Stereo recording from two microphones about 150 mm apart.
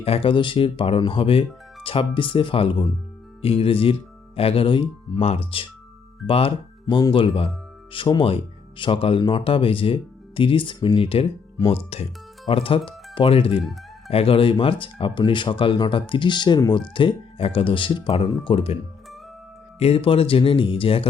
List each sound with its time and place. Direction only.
0.0 s speech: 40° left (ahead or behind)
19.8 s speech: 40° left (ahead or behind)